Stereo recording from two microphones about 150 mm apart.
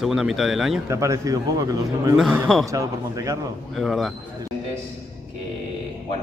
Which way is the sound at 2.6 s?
20° right (ahead or behind).